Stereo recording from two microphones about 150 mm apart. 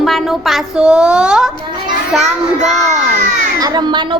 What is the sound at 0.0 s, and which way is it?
A woman's voice, centre (ahead or behind).